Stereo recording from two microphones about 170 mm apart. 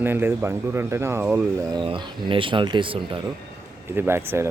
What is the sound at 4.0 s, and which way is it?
Speech, 15° right (ahead or behind).